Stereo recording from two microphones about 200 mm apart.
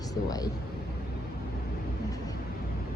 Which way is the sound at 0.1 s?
20° left (ahead or behind).